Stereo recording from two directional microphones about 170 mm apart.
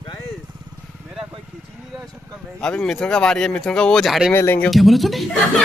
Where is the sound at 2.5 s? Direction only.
5° left (ahead or behind).